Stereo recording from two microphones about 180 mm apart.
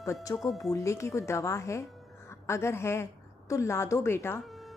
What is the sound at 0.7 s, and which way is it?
A woman's voice, 15° left (ahead or behind).